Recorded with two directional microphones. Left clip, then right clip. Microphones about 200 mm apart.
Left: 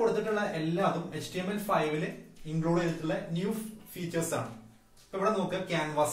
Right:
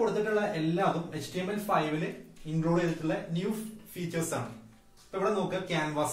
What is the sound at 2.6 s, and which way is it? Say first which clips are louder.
Speech: right 1 dB; 10° right (ahead or behind).